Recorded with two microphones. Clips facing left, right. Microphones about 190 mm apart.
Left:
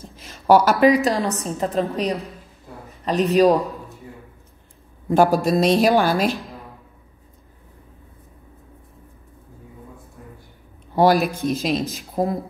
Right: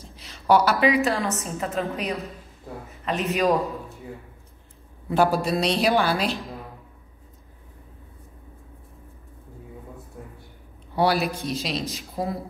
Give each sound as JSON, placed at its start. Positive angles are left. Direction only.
{"t": 0.1, "sound": "a woman's voice", "side_deg": 45}
{"t": 5.1, "sound": "speech", "side_deg": 45}
{"t": 11.0, "sound": "speech", "side_deg": 45}